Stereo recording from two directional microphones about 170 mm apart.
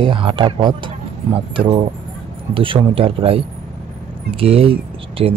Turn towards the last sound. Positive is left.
turn(degrees=-35)  # may be behind; listen again after turning